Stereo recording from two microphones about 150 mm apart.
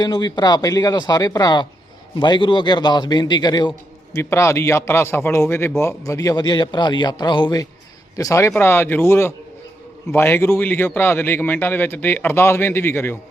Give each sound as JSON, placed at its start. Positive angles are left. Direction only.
{"t": 0.0, "sound": "a man's voice", "side_deg": 25}